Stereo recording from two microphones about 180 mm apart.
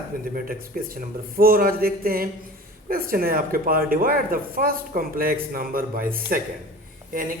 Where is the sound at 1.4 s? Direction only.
55° right (ahead or behind).